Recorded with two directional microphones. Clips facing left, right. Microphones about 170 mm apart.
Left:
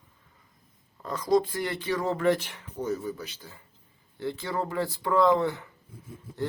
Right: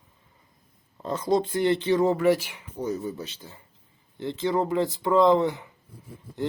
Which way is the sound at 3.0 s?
25° right (ahead or behind).